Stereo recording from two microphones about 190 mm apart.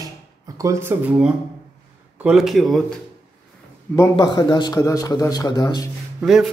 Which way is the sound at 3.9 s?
20° left (ahead or behind).